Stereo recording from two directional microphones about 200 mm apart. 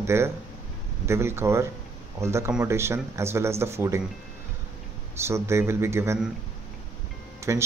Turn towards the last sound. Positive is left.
turn(degrees=-15)  # may be behind; listen again after turning